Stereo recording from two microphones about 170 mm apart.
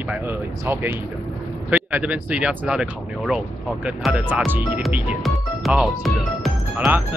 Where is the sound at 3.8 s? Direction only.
5° right (ahead or behind).